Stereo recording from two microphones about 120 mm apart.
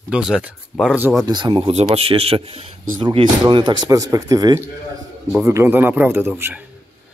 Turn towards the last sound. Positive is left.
turn(degrees=-20)  # may be behind; listen again after turning